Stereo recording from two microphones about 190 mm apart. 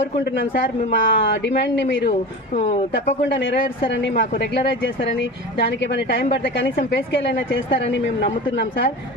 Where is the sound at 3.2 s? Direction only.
70° left (ahead or behind).